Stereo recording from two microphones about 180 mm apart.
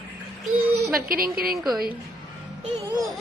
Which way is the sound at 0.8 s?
55° right (ahead or behind).